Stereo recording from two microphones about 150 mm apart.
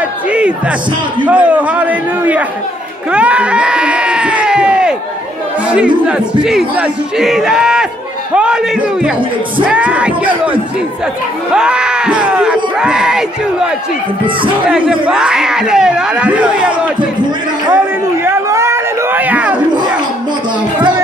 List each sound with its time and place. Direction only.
1.2 s a man's voice: 10° right (ahead or behind)
3.1 s a sound: 10° right (ahead or behind)
5.7 s speech: 10° right (ahead or behind)
9.7 s a man's voice: 10° right (ahead or behind)
11.5 s speech: 5° right (ahead or behind)
14.7 s speech: 5° right (ahead or behind)
18.2 s a sound: 15° right (ahead or behind)